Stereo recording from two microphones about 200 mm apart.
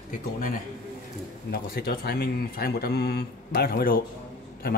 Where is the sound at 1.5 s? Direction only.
50° left (ahead or behind).